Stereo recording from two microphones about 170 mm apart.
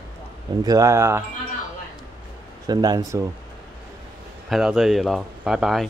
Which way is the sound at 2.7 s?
25° right (ahead or behind).